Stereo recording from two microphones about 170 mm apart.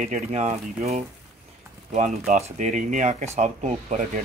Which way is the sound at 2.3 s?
45° right (ahead or behind).